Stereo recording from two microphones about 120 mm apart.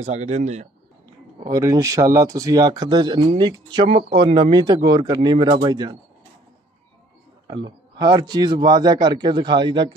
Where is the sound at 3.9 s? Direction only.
55° right (ahead or behind).